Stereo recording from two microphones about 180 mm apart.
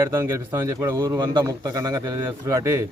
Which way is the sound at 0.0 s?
15° right (ahead or behind).